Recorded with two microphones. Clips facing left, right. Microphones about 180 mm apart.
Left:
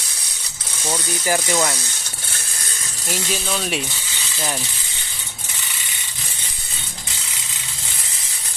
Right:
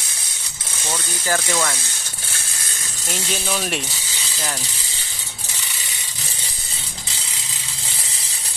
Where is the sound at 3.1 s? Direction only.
Centre (ahead or behind).